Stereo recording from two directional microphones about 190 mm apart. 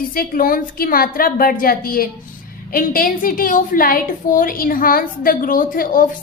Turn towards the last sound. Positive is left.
turn(degrees=50)  # may be behind; listen again after turning